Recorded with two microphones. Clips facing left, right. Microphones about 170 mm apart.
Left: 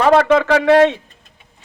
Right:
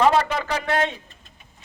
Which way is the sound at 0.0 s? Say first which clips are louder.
Left 7 dB; 70° left (ahead or behind).